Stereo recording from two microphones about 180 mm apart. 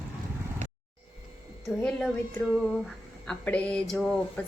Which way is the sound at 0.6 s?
45° right (ahead or behind).